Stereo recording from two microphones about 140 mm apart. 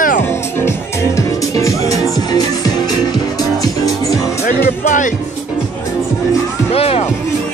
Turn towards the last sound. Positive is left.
turn(degrees=45)  # may be behind; listen again after turning